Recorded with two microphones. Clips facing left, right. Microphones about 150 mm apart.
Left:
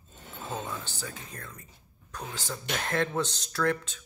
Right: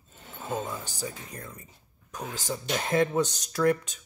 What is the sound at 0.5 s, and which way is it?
Speech, 15° right (ahead or behind).